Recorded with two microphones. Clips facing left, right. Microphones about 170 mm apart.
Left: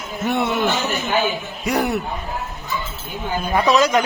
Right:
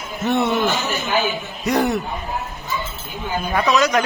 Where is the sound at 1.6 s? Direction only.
10° left (ahead or behind).